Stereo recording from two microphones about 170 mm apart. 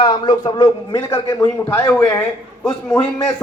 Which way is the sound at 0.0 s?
30° left (ahead or behind).